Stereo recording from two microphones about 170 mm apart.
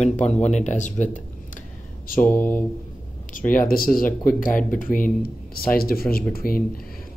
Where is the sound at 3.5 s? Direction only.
55° left (ahead or behind).